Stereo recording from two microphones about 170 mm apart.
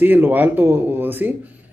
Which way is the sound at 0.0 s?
10° right (ahead or behind).